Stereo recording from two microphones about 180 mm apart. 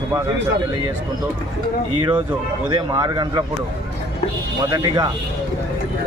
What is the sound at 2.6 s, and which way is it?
Speech, 20° right (ahead or behind).